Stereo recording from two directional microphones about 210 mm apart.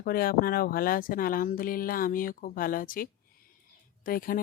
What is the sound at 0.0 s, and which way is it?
Speech, 45° left (ahead or behind).